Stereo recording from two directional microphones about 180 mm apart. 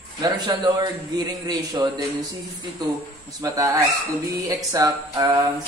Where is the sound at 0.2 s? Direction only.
20° right (ahead or behind).